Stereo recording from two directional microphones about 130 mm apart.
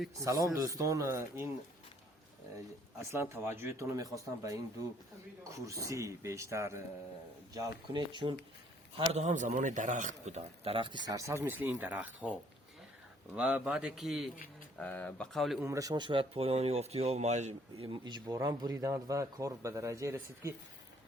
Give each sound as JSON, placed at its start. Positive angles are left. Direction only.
{"t": 0.2, "sound": "speech", "side_deg": -25}
{"t": 3.0, "sound": "speech", "side_deg": -20}
{"t": 7.5, "sound": "speech", "side_deg": -30}
{"t": 9.0, "sound": "a man's voice", "side_deg": -60}
{"t": 11.1, "sound": "speech", "side_deg": -25}
{"t": 13.3, "sound": "speech", "side_deg": -10}
{"t": 14.8, "sound": "speech", "side_deg": 10}
{"t": 15.3, "sound": "speech", "side_deg": 0}
{"t": 15.6, "sound": "speech", "side_deg": -25}
{"t": 17.7, "sound": "speech", "side_deg": -35}